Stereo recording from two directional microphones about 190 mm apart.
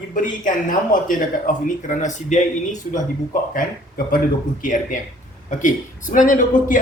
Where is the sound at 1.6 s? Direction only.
40° left (ahead or behind).